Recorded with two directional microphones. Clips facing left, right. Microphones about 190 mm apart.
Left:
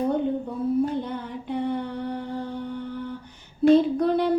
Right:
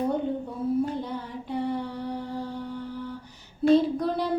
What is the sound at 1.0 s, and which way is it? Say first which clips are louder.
Music: left 2 dB; centre (ahead or behind).